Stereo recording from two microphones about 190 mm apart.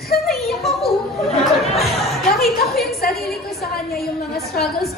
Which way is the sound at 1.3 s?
30° left (ahead or behind).